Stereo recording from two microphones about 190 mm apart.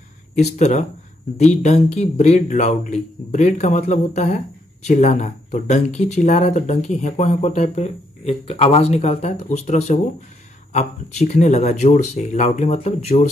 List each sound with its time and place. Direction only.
0.4 s speech: 35° left (ahead or behind)